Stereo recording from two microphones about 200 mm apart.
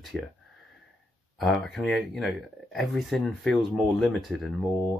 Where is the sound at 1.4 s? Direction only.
Centre (ahead or behind).